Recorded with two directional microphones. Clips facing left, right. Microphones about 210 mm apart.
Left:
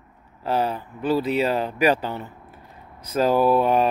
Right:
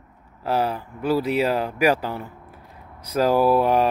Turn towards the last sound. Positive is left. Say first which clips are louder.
# even
turn(degrees=-10)  # may be behind; listen again after turning